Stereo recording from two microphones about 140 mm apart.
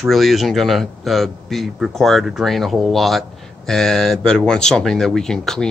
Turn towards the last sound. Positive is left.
turn(degrees=5)  # may be behind; listen again after turning